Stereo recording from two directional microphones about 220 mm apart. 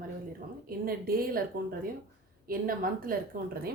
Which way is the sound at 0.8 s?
40° right (ahead or behind).